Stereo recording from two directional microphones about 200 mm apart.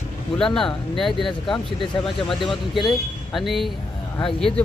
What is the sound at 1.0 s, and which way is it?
Speech, centre (ahead or behind).